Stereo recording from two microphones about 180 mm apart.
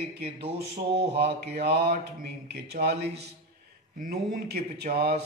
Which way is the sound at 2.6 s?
65° right (ahead or behind).